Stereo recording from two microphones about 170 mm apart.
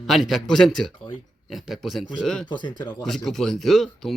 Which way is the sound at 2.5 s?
25° left (ahead or behind).